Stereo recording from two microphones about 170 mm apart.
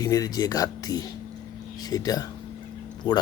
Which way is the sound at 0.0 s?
20° left (ahead or behind).